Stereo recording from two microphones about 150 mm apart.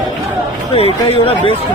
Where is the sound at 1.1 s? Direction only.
40° left (ahead or behind).